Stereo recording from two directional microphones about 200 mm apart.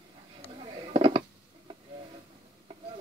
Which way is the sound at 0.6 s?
25° right (ahead or behind).